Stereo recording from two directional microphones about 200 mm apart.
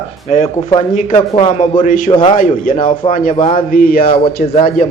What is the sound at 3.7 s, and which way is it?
Speech, 45° left (ahead or behind).